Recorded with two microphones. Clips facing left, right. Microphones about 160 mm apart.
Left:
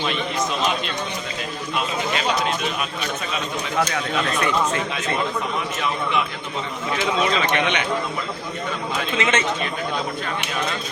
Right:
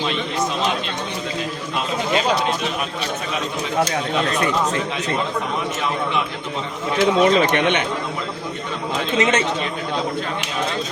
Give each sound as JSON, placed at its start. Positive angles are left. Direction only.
{"t": 7.0, "sound": "speech", "side_deg": -50}
{"t": 9.1, "sound": "speech", "side_deg": -40}